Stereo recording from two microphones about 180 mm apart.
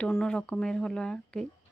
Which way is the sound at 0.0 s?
5° left (ahead or behind).